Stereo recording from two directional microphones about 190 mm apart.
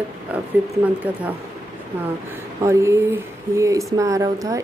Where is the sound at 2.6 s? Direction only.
15° right (ahead or behind).